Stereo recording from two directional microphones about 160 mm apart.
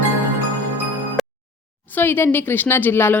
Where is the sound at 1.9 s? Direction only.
10° left (ahead or behind).